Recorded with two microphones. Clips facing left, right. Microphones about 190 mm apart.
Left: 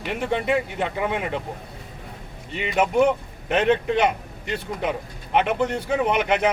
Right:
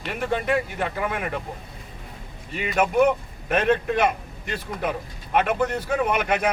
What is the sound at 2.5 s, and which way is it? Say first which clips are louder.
A man's voice: left 1 dB; 20° left (ahead or behind).